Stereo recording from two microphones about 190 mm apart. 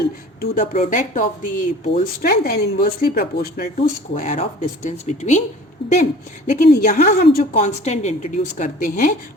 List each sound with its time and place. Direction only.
0.7 s speech: 45° left (ahead or behind)
3.8 s speech: 40° left (ahead or behind)
5.8 s speech: 25° left (ahead or behind)
6.5 s speech: 45° left (ahead or behind)